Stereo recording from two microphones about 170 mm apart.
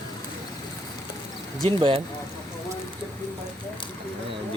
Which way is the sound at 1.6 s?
30° right (ahead or behind).